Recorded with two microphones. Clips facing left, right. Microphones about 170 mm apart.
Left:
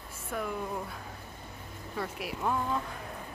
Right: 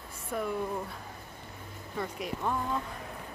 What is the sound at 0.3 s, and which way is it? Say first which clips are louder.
Speech: right 2 dB; centre (ahead or behind).